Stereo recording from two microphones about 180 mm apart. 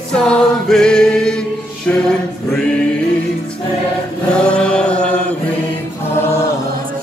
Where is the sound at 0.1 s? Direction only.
5° left (ahead or behind).